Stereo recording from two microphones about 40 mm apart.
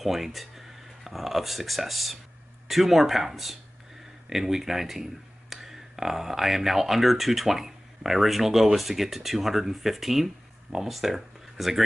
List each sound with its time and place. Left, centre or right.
0.0 s speech: centre